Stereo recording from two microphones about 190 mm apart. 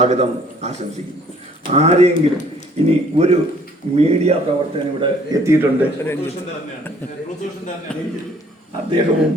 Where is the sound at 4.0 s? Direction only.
35° right (ahead or behind).